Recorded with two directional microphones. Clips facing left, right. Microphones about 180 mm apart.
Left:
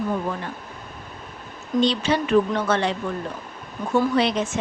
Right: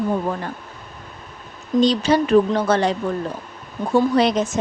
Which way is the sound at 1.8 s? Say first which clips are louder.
Right 4 dB; 40° right (ahead or behind).